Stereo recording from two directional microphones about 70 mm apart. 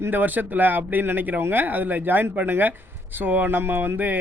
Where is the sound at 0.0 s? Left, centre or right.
Right.